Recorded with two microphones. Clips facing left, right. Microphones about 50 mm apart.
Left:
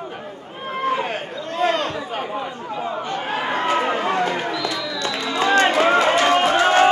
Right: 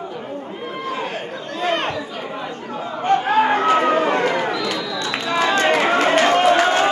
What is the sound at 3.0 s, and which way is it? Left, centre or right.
Chatter, right.